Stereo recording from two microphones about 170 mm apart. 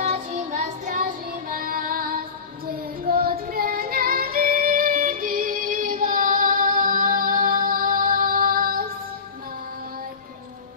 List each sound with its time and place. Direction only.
0.0 s child singing: 45° right (ahead or behind)